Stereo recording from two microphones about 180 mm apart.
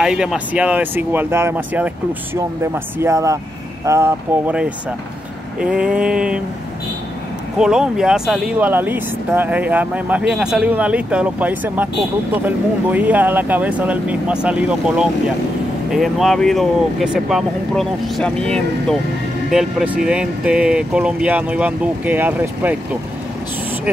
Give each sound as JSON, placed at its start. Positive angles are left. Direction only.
{"t": 0.0, "sound": "speech", "side_deg": -5}
{"t": 7.5, "sound": "speech", "side_deg": -5}